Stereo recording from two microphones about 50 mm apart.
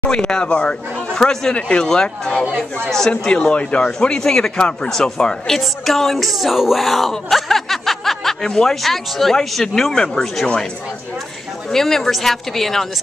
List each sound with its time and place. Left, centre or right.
0.1 s speech: centre
1.1 s speech: centre
11.7 s speech: centre